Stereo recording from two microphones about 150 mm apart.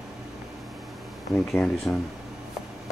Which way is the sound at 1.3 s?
5° left (ahead or behind).